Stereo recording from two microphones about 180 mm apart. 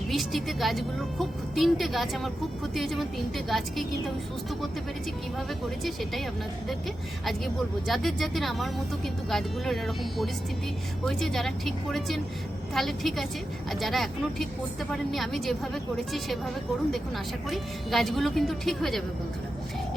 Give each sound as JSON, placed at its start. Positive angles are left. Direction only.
{"t": 0.1, "sound": "speech", "side_deg": 0}
{"t": 5.8, "sound": "speech", "side_deg": 0}
{"t": 7.3, "sound": "speech", "side_deg": 0}
{"t": 17.5, "sound": "speech", "side_deg": 0}